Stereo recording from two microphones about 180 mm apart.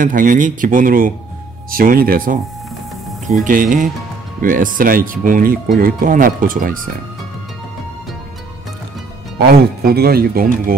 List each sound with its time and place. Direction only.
0.0 s speech: 50° right (ahead or behind)
3.4 s speech: 45° right (ahead or behind)
9.5 s speech: 60° right (ahead or behind)